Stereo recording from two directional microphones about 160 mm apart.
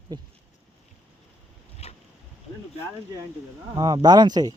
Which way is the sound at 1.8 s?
40° left (ahead or behind).